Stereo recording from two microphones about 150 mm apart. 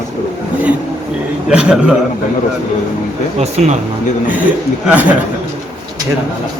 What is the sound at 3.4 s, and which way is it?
Speech, 45° right (ahead or behind).